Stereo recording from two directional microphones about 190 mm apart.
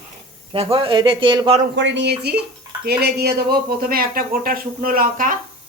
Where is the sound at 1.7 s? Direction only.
70° right (ahead or behind); by 5.3 s 45° right (ahead or behind).